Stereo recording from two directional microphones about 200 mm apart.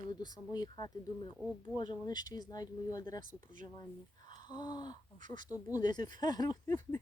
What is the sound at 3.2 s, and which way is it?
Speech, 40° right (ahead or behind).